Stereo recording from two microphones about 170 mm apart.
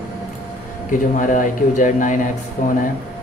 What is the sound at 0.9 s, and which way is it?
Speech, 50° left (ahead or behind).